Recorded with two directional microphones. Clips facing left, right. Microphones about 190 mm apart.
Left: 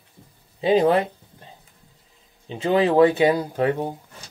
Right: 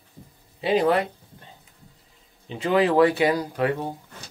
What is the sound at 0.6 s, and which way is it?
Speech, 20° left (ahead or behind).